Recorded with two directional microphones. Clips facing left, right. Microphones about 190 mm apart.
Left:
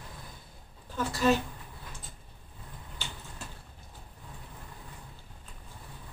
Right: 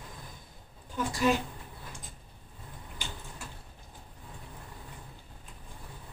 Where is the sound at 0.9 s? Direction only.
15° right (ahead or behind).